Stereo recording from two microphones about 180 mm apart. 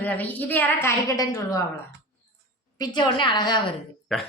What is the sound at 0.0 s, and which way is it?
A woman's voice, 10° left (ahead or behind).